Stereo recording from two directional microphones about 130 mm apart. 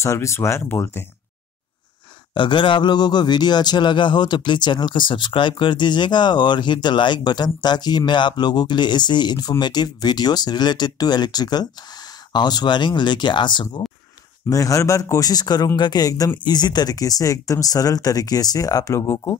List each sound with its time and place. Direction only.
0.0 s speech: 20° left (ahead or behind)
2.3 s a man's voice: 40° left (ahead or behind)
14.5 s speech: 25° left (ahead or behind)